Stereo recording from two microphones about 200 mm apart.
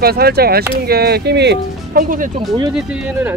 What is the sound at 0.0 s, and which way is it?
Speech, 50° right (ahead or behind).